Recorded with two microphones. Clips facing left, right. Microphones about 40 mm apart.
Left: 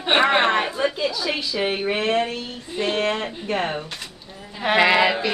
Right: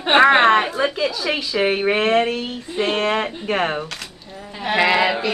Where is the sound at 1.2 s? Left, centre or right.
Right.